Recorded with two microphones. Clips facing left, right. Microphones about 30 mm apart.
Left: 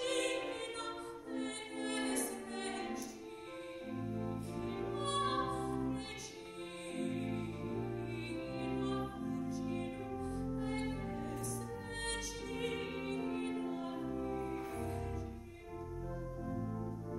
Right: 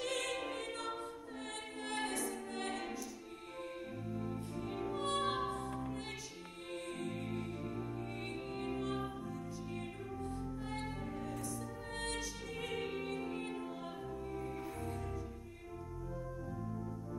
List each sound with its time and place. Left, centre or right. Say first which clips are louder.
0.0 s music: left 2 dB; centre
7.0 s music: left 6 dB; centre
16.4 s music: left 2 dB; centre